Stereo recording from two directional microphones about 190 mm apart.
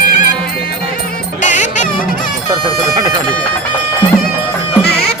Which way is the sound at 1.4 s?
40° left (ahead or behind).